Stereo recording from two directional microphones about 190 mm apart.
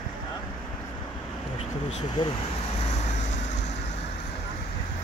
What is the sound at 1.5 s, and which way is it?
Speech, 30° left (ahead or behind).